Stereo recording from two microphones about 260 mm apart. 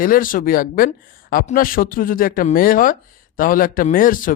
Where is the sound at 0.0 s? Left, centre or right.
Left.